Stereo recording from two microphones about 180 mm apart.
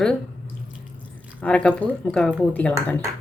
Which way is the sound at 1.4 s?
5° left (ahead or behind).